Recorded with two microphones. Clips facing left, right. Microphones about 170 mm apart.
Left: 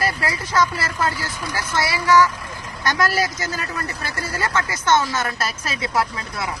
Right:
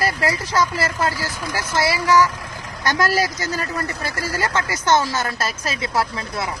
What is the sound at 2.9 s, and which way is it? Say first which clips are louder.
Speech: right 1 dB; 35° right (ahead or behind).